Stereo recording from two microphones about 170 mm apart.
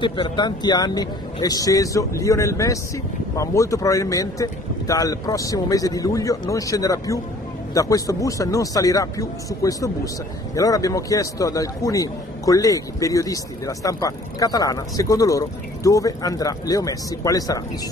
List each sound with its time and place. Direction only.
0.0 s a man's voice: 25° left (ahead or behind)